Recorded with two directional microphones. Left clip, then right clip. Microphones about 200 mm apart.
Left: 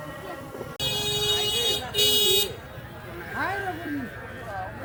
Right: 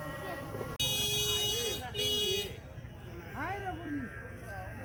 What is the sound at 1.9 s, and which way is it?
Vehicle, 30° left (ahead or behind).